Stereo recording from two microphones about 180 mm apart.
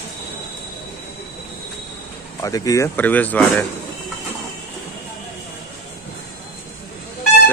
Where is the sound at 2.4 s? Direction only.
20° left (ahead or behind).